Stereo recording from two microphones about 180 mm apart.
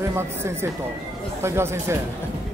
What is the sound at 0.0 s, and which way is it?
Speech, 15° right (ahead or behind).